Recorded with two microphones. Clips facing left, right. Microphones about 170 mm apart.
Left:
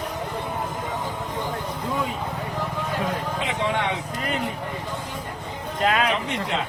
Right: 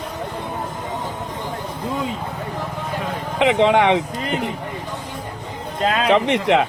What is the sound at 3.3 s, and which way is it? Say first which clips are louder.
Speech: right 15 dB; 90° right.